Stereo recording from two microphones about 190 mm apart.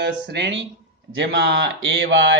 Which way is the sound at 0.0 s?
65° right (ahead or behind).